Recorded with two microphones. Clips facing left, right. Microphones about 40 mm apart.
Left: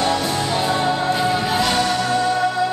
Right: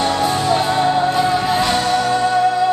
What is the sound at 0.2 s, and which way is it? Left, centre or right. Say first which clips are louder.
Music: right 5 dB; right.